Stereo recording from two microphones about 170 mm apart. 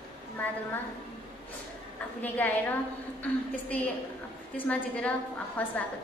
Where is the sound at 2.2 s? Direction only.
10° left (ahead or behind).